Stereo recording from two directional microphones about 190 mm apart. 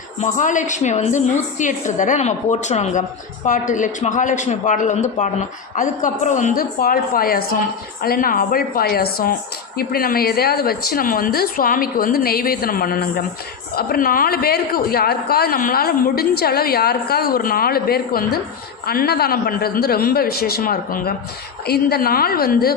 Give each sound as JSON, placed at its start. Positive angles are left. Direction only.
{"t": 0.2, "sound": "a woman's voice", "side_deg": 40}